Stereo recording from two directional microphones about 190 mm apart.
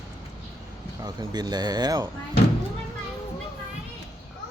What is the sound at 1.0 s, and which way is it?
Speech, 20° right (ahead or behind).